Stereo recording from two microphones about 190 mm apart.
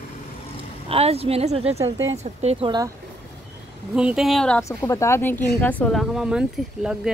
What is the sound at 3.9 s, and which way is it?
Speech, 5° right (ahead or behind).